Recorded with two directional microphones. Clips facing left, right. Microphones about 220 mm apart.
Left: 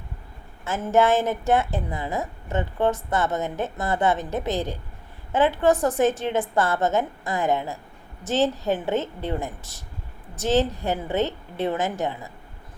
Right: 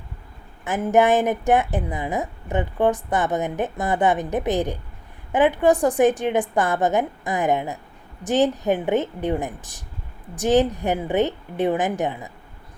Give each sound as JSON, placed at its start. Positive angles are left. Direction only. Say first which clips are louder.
{"t": 0.6, "sound": "a woman's voice", "louder": "right 2 dB", "side_deg": -15}